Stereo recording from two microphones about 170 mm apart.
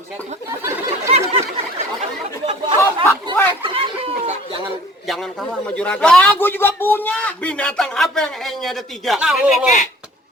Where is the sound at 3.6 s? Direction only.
30° right (ahead or behind).